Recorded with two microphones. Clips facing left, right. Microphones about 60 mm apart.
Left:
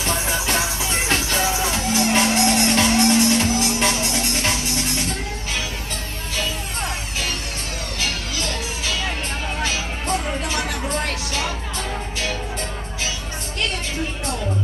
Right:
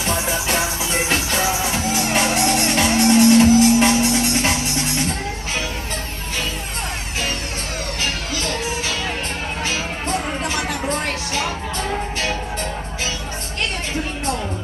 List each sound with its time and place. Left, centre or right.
0.0 s music: centre